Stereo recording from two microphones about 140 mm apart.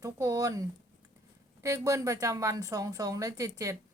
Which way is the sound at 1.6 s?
20° right (ahead or behind).